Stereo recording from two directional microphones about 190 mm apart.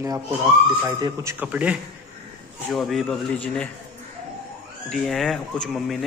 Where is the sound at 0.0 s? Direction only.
15° right (ahead or behind); by 3.3 s centre (ahead or behind).